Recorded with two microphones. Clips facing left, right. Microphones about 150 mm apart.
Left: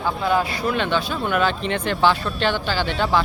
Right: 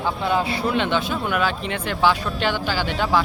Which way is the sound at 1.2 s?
5° right (ahead or behind).